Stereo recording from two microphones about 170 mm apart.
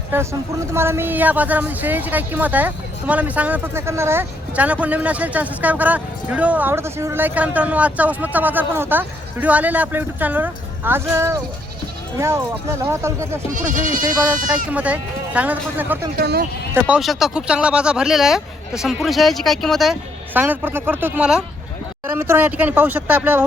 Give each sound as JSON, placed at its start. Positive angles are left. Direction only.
{"t": 0.7, "sound": "speech", "side_deg": -15}
{"t": 13.5, "sound": "speech", "side_deg": -50}
{"t": 14.7, "sound": "speech", "side_deg": -10}
{"t": 16.1, "sound": "speech", "side_deg": -65}
{"t": 16.7, "sound": "speech", "side_deg": -5}
{"t": 20.3, "sound": "speech", "side_deg": -10}